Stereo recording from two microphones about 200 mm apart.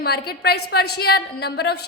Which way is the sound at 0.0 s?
55° left (ahead or behind).